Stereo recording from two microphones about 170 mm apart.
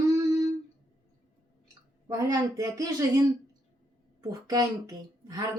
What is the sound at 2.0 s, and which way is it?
A woman's voice, 20° right (ahead or behind).